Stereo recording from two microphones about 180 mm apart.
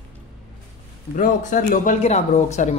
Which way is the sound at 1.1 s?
45° left (ahead or behind).